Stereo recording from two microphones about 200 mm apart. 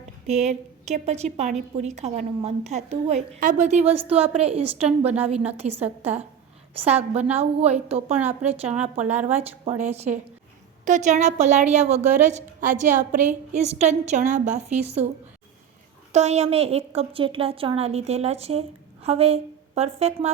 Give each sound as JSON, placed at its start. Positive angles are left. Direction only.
{"t": 0.3, "sound": "a woman's voice", "side_deg": -35}
{"t": 16.1, "sound": "a woman's voice", "side_deg": -35}